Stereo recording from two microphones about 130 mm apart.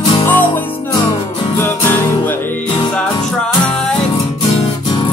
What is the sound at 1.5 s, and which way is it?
Music, 15° left (ahead or behind).